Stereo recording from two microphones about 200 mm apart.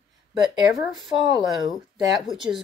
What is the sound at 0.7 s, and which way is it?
Speech, centre (ahead or behind).